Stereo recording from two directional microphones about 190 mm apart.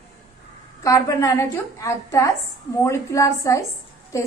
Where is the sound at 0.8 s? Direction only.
15° left (ahead or behind).